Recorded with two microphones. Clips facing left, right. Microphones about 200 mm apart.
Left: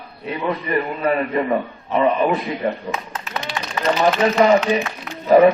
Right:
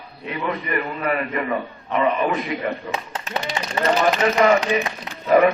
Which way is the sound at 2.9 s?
30° right (ahead or behind).